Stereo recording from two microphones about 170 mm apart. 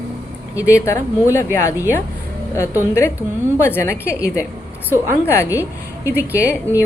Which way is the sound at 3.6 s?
15° left (ahead or behind).